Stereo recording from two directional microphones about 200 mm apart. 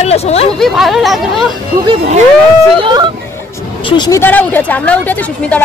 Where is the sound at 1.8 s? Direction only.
25° right (ahead or behind).